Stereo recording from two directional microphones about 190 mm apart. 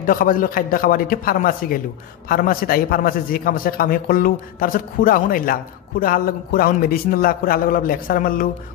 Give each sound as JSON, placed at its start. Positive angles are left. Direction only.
{"t": 0.0, "sound": "a man's voice", "side_deg": 45}